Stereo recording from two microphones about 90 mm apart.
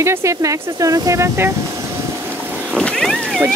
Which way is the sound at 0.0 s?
30° right (ahead or behind).